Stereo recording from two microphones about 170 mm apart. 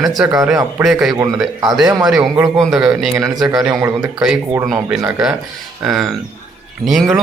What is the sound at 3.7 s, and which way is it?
Speech, 20° right (ahead or behind).